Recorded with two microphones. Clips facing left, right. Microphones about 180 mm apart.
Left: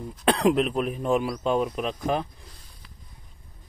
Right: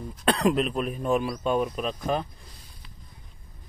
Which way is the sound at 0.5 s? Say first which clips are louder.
Left 2 dB; 15° left (ahead or behind).